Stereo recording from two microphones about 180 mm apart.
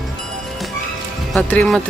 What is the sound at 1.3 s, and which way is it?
Speech, 5° left (ahead or behind).